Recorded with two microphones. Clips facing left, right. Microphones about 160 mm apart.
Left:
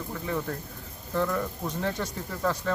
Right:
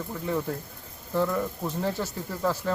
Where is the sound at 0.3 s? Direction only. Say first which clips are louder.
Right 3 dB; 5° right (ahead or behind).